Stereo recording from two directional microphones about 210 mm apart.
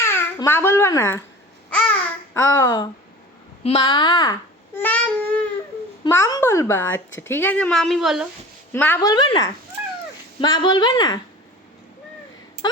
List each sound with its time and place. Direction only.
0.0 s a child's voice: 10° left (ahead or behind)
1.7 s babbling: 5° left (ahead or behind)
6.1 s speech: 15° left (ahead or behind)
8.7 s speech: 10° left (ahead or behind)